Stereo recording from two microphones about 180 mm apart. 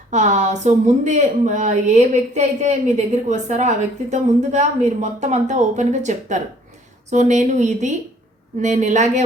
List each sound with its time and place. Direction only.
0.1 s a woman's voice: 40° right (ahead or behind)